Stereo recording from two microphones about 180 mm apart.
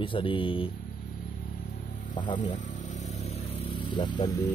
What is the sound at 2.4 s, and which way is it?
Vehicle, 40° left (ahead or behind).